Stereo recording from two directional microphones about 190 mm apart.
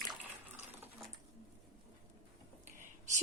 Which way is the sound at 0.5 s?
10° right (ahead or behind).